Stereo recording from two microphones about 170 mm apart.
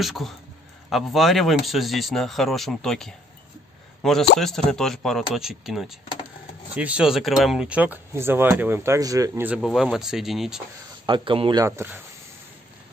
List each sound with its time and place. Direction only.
0.0 s speech: centre (ahead or behind)
9.6 s speech: centre (ahead or behind)
11.1 s speech: 30° right (ahead or behind)
11.6 s speech: 15° right (ahead or behind)